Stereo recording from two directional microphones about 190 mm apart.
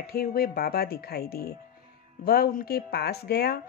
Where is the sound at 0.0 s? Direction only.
55° left (ahead or behind).